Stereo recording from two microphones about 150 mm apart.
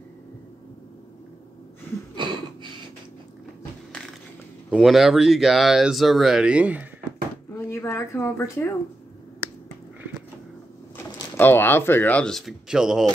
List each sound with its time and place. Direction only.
2.1 s a sound: 30° right (ahead or behind)
4.7 s speech: centre (ahead or behind)
7.5 s speech: 20° left (ahead or behind)
11.3 s speech: 15° left (ahead or behind); by 13.0 s 5° right (ahead or behind)